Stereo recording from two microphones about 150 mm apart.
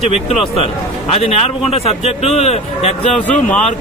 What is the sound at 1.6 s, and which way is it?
A man's voice, 40° left (ahead or behind).